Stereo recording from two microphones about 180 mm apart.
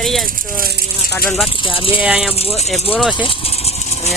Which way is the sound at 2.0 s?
5° right (ahead or behind).